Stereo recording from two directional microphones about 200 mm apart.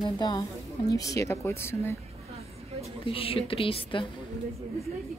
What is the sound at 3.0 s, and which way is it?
A woman's voice, 25° left (ahead or behind).